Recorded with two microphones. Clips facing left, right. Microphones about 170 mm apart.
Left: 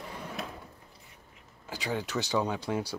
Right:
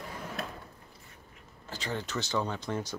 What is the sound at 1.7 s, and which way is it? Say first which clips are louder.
Speech: left 3 dB; 10° left (ahead or behind).